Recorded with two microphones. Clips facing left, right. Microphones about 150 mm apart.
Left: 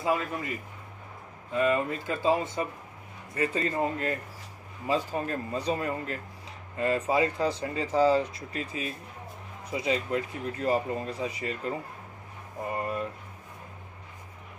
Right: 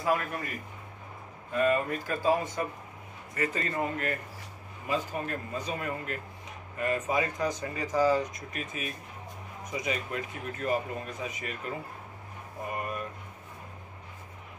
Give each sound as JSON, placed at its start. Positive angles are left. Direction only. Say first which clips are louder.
{"t": 0.0, "sound": "speech", "louder": "left 1 dB", "side_deg": 20}
{"t": 1.5, "sound": "speech", "louder": "left 1 dB", "side_deg": 20}
{"t": 12.7, "sound": "speech", "louder": "left 4 dB", "side_deg": 30}